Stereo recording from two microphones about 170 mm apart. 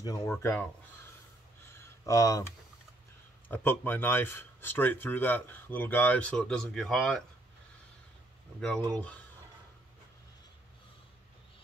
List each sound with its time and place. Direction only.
0.0 s speech: 20° left (ahead or behind)
1.8 s a sound: 20° left (ahead or behind)
3.4 s speech: 10° left (ahead or behind)
8.5 s speech: 5° left (ahead or behind)